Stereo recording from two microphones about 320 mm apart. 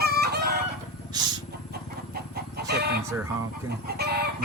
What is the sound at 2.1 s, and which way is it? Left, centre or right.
Chicken, right.